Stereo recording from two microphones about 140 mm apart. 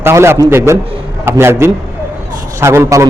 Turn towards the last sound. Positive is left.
turn(degrees=-20)  # may be behind; listen again after turning